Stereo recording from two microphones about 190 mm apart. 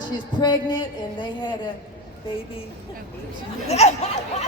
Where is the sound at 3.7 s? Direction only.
35° left (ahead or behind).